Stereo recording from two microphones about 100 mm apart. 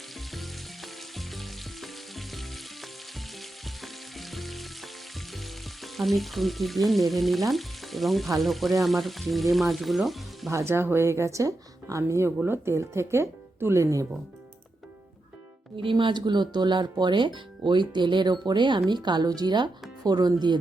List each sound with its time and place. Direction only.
0.3 s frying: centre (ahead or behind)
10.5 s speech: 25° right (ahead or behind)
15.8 s speech: 55° right (ahead or behind)